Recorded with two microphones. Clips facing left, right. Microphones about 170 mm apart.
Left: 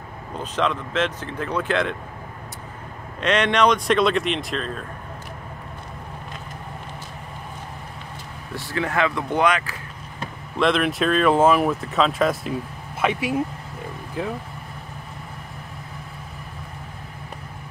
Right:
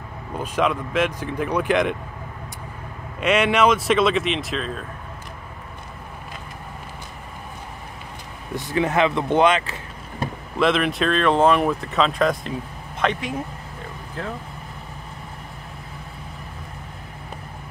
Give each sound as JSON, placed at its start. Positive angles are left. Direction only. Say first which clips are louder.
{"t": 0.4, "sound": "speech", "louder": "right 2 dB", "side_deg": -10}
{"t": 3.2, "sound": "speech", "louder": "right 1 dB", "side_deg": -10}
{"t": 8.5, "sound": "speech", "louder": "right 3 dB", "side_deg": -20}
{"t": 10.6, "sound": "speech", "louder": "even", "side_deg": 0}